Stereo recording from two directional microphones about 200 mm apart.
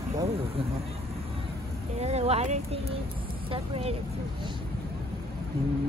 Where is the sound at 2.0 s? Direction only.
30° right (ahead or behind).